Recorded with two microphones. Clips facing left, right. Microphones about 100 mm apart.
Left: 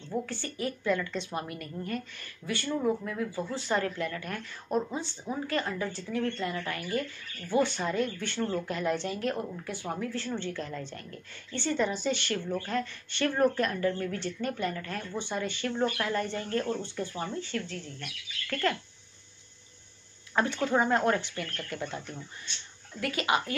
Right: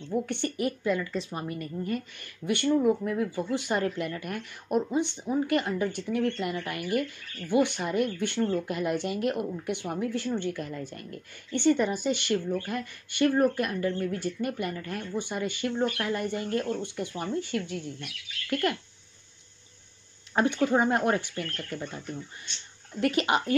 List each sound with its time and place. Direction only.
0.1 s speech: 20° right (ahead or behind)
0.8 s a woman's voice: 5° right (ahead or behind)
2.4 s speech: 20° right (ahead or behind)
20.3 s speech: 15° right (ahead or behind)
21.4 s a woman's voice: centre (ahead or behind)
22.9 s speech: 25° right (ahead or behind)